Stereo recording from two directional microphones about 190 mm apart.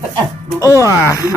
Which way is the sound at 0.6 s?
15° left (ahead or behind).